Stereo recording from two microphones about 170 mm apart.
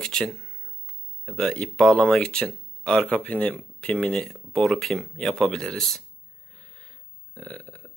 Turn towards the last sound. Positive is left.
turn(degrees=5)  # may be behind; listen again after turning